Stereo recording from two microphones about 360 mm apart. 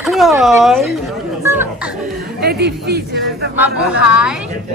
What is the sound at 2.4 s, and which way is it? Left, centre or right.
A man's voice, right.